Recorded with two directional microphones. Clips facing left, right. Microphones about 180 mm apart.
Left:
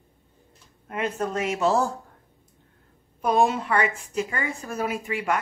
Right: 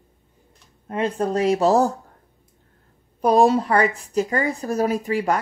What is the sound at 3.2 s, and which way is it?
A woman's voice, 35° right (ahead or behind).